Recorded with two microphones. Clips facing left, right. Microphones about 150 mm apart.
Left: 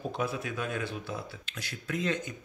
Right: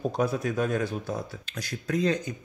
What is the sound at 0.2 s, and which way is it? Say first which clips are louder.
Speech: right 7 dB; 40° right (ahead or behind).